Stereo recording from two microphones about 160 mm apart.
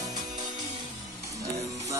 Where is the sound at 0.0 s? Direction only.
25° right (ahead or behind).